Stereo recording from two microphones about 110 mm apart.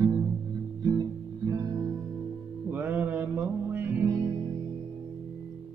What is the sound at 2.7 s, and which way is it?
Mantra, 15° right (ahead or behind).